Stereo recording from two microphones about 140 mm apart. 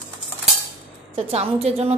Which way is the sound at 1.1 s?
50° right (ahead or behind).